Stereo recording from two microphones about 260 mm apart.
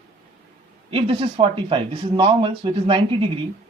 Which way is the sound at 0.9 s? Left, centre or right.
Right.